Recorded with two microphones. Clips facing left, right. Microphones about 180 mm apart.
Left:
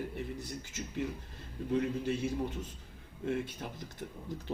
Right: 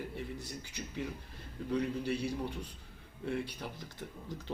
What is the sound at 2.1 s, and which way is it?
A man's voice, 20° left (ahead or behind).